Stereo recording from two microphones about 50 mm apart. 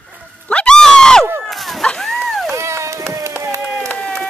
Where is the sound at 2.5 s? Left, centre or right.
Right.